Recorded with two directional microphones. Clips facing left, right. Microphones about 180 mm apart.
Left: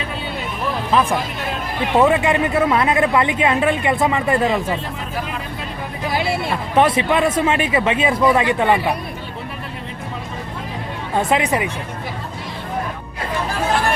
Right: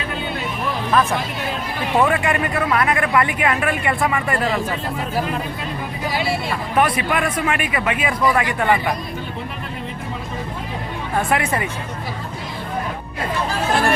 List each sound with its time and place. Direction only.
2.0 s speech: 20° left (ahead or behind)
6.7 s speech: 25° left (ahead or behind)
11.1 s speech: 20° left (ahead or behind)